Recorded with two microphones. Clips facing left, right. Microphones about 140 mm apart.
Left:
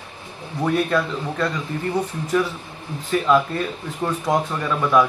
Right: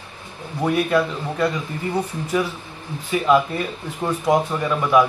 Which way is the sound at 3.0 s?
10° right (ahead or behind).